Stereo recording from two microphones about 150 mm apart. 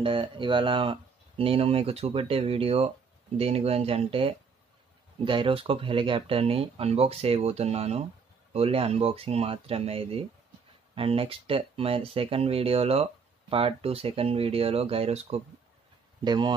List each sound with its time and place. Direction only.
0.0 s speech: 35° right (ahead or behind)
16.3 s a man's voice: 30° right (ahead or behind)